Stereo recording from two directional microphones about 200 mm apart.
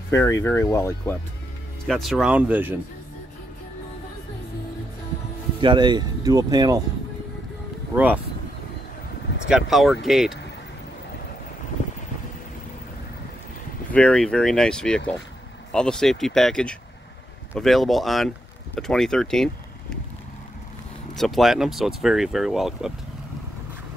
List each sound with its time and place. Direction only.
0.1 s speech: 15° left (ahead or behind)
1.9 s speech: centre (ahead or behind)
5.6 s speech: 25° right (ahead or behind)
7.9 s speech: 10° right (ahead or behind)
9.5 s speech: centre (ahead or behind)
13.9 s speech: 5° left (ahead or behind)
21.2 s speech: centre (ahead or behind)